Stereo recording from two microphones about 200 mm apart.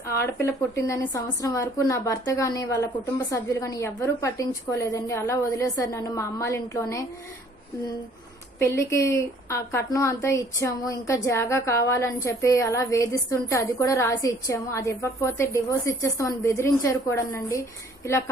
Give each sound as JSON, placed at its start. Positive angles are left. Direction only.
{"t": 0.3, "sound": "a woman's voice", "side_deg": 15}
{"t": 8.5, "sound": "a woman's voice", "side_deg": 15}